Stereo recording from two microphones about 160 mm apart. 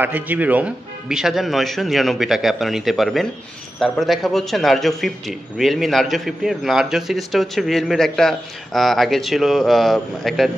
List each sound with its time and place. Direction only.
0.0 s a man's voice: 10° right (ahead or behind)